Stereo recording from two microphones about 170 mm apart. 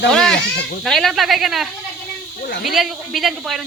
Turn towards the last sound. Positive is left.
turn(degrees=0)  # may be behind; listen again after turning